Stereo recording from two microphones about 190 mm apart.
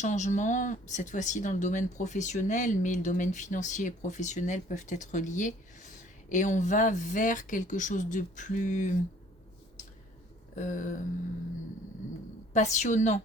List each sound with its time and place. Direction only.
0.0 s speech: 40° left (ahead or behind)
10.5 s speech: 40° left (ahead or behind)
12.5 s speech: 40° left (ahead or behind)